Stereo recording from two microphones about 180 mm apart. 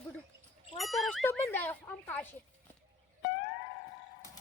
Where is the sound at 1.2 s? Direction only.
10° left (ahead or behind).